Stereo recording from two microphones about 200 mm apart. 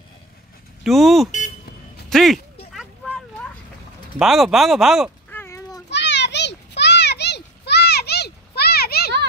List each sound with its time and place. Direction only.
0.8 s speech: centre (ahead or behind)
4.2 s speech: centre (ahead or behind)
5.3 s children playing: 10° left (ahead or behind)
5.9 s children playing: 60° left (ahead or behind)